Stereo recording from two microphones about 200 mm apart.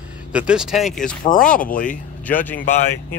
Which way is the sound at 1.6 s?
40° left (ahead or behind).